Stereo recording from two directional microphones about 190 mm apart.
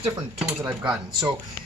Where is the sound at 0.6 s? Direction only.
10° right (ahead or behind).